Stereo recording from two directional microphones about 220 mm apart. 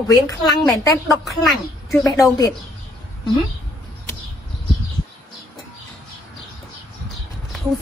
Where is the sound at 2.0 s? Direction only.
15° left (ahead or behind).